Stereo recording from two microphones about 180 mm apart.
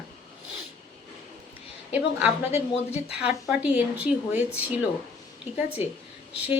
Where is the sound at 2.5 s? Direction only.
35° left (ahead or behind).